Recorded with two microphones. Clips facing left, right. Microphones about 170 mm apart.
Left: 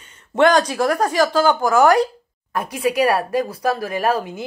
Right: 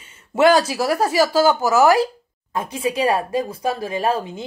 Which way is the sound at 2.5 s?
25° right (ahead or behind).